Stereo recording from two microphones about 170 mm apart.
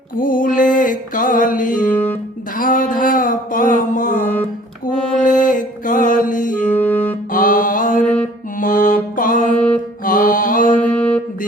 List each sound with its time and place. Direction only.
0.2 s music: 55° left (ahead or behind)
1.9 s music: 10° left (ahead or behind)
2.6 s a sound: 55° left (ahead or behind)
5.2 s music: 50° left (ahead or behind)
6.7 s music: 10° left (ahead or behind)
7.3 s mantra: 55° left (ahead or behind)
8.5 s music: 55° left (ahead or behind)
10.0 s mantra: 55° left (ahead or behind)
10.8 s a sound: 5° left (ahead or behind)